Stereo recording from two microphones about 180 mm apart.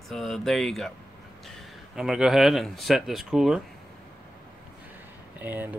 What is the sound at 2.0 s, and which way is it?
Speech, 5° right (ahead or behind).